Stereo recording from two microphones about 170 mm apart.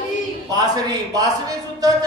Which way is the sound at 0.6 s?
20° right (ahead or behind).